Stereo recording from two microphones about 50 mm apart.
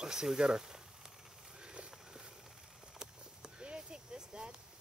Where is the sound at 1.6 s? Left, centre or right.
Centre.